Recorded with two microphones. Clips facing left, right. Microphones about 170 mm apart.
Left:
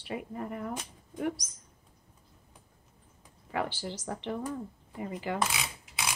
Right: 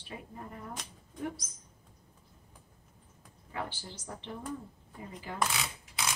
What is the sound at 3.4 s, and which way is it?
Speech, 90° left.